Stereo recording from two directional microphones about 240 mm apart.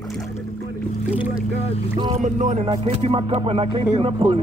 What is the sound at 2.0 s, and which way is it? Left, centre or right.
Music, right.